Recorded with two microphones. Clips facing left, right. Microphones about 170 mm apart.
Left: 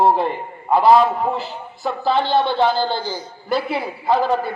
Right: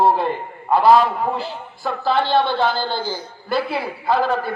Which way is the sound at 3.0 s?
55° right (ahead or behind).